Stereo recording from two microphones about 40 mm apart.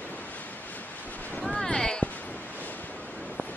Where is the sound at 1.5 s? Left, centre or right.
Left.